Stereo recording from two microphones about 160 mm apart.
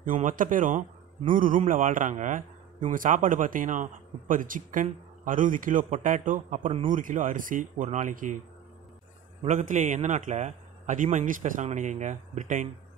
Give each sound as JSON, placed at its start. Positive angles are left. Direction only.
{"t": 0.0, "sound": "a man's voice", "side_deg": -55}
{"t": 9.4, "sound": "a man's voice", "side_deg": -50}